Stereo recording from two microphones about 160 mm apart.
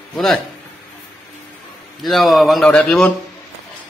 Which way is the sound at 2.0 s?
Centre (ahead or behind).